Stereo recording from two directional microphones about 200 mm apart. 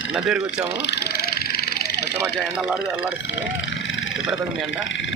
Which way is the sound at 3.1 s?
65° left (ahead or behind).